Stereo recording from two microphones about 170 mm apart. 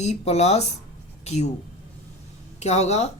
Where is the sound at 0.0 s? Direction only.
40° left (ahead or behind).